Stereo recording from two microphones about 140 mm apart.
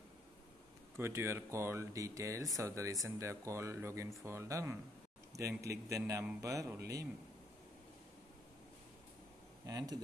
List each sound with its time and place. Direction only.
0.9 s speech: 20° right (ahead or behind)
9.7 s speech: 25° right (ahead or behind)